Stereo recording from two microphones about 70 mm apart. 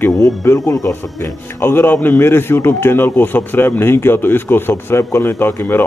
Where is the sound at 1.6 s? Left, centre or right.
Left.